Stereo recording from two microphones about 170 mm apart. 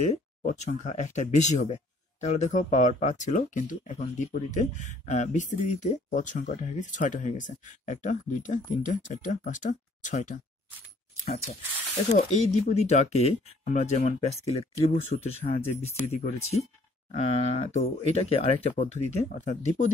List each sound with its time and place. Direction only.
0.0 s speech: 50° left (ahead or behind)
12.1 s speech: 45° left (ahead or behind)